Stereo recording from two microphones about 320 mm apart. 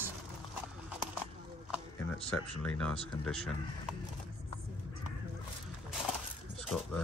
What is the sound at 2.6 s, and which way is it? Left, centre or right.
Speech, centre.